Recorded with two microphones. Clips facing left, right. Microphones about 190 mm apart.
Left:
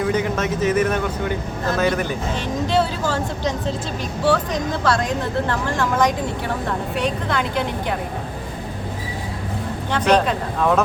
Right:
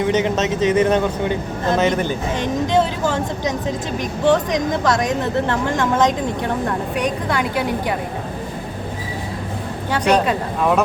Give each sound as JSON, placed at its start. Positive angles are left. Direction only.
{"t": 0.0, "sound": "speech", "side_deg": -20}
{"t": 4.2, "sound": "speech", "side_deg": -15}
{"t": 7.0, "sound": "a woman's voice", "side_deg": -10}
{"t": 9.9, "sound": "a woman's voice", "side_deg": -10}